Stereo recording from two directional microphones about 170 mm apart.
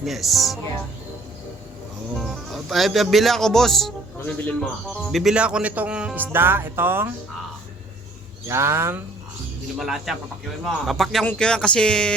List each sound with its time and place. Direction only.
0.0 s speech: centre (ahead or behind)
2.1 s speech: centre (ahead or behind)
4.9 s speech: 5° right (ahead or behind)
8.4 s speech: 15° right (ahead or behind)
9.7 s speech: centre (ahead or behind)